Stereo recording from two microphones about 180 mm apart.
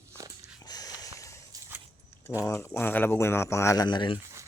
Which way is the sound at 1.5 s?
20° right (ahead or behind).